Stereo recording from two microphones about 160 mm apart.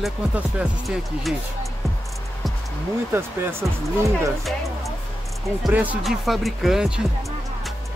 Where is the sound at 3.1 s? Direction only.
15° right (ahead or behind).